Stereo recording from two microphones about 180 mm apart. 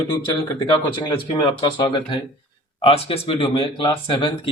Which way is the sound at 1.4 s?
25° left (ahead or behind).